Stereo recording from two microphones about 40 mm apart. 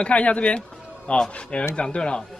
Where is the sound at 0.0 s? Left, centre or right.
Left.